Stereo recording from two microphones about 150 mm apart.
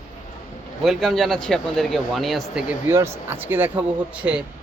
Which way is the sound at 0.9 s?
Centre (ahead or behind).